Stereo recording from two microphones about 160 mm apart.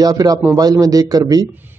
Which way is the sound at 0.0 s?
25° right (ahead or behind).